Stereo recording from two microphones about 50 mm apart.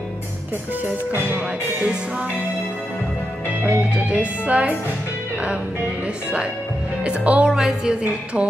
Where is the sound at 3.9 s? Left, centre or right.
Right.